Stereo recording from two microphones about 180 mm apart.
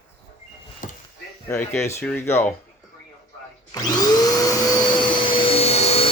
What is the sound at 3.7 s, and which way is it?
Vacuum cleaner, 20° left (ahead or behind).